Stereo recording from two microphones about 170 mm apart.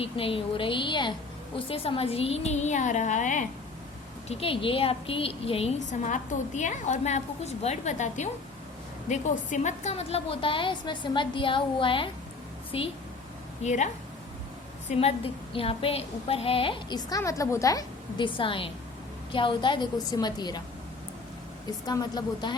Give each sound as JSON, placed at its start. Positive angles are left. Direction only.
{"t": 0.0, "sound": "a woman's voice", "side_deg": 35}
{"t": 4.3, "sound": "a woman's voice", "side_deg": 35}
{"t": 13.6, "sound": "a woman's voice", "side_deg": 45}
{"t": 21.7, "sound": "a woman's voice", "side_deg": 25}